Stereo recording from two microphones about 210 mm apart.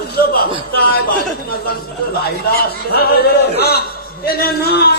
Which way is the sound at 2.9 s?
50° left (ahead or behind).